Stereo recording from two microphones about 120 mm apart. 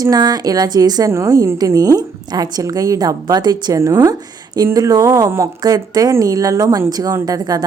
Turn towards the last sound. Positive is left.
turn(degrees=-30)  # may be behind; listen again after turning